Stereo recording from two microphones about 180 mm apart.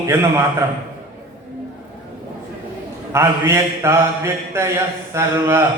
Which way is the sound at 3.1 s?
15° right (ahead or behind).